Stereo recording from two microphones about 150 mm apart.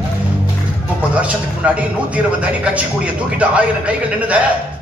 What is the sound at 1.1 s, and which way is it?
A man's voice, 10° right (ahead or behind).